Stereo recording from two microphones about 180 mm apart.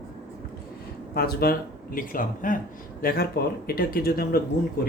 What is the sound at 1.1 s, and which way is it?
Speech, 60° left (ahead or behind).